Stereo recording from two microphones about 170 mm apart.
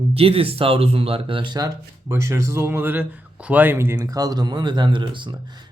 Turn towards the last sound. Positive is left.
turn(degrees=-25)  # may be behind; listen again after turning